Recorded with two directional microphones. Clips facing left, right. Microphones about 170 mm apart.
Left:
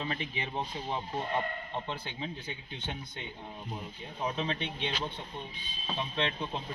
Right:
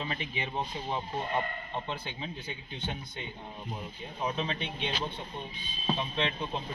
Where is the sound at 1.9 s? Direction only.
10° right (ahead or behind).